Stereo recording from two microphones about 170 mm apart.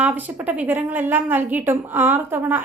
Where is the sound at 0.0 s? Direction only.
10° right (ahead or behind).